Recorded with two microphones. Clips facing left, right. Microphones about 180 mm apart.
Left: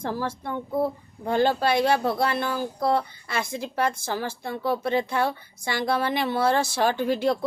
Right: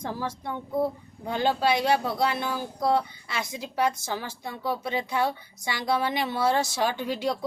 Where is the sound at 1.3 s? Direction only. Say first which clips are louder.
Left 3 dB; 50° left (ahead or behind).